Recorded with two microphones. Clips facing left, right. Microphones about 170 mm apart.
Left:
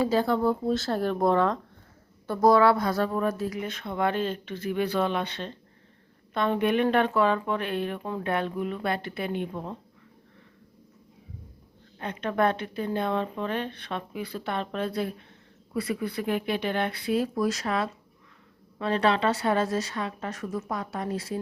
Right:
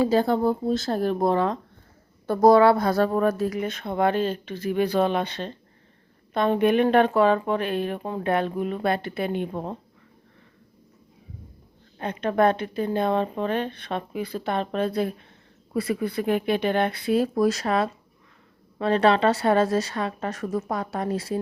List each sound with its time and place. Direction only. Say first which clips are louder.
0.3 s speech: right 2 dB; 15° right (ahead or behind)
2.2 s a woman's voice: right 4 dB; 40° right (ahead or behind)
2.5 s speech: right 4 dB; 25° right (ahead or behind)
3.2 s speech: right 5 dB; 55° right (ahead or behind); by 8.8 s 35° right (ahead or behind)
8.8 s speech: right 5 dB; 55° right (ahead or behind)
11.9 s speech: right 4 dB; 40° right (ahead or behind)
18.9 s a woman's voice: right 5 dB; 55° right (ahead or behind)
20.5 s speech: right 5 dB; 40° right (ahead or behind)
20.7 s a woman's voice: right 4 dB; 60° right (ahead or behind)
21.1 s speech: right 4 dB; 30° right (ahead or behind)